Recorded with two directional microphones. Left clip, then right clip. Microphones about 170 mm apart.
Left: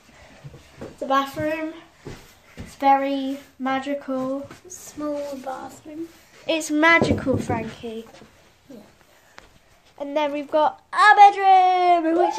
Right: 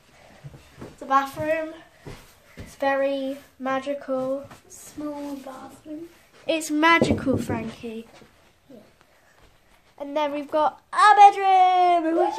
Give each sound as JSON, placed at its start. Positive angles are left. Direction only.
{"t": 1.0, "sound": "speech", "side_deg": -10}
{"t": 2.8, "sound": "a woman's voice", "side_deg": 0}
{"t": 4.7, "sound": "a sound", "side_deg": 30}
{"t": 5.5, "sound": "speech", "side_deg": 60}
{"t": 6.4, "sound": "a woman's voice", "side_deg": 5}
{"t": 10.1, "sound": "speech", "side_deg": -10}